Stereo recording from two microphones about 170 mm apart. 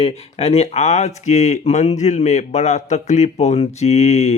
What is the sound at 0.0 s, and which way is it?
Speech, 40° left (ahead or behind).